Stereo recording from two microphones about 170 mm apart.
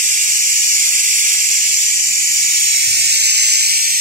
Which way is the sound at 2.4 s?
65° right (ahead or behind).